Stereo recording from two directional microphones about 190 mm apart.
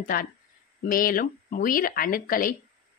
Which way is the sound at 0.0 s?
50° left (ahead or behind).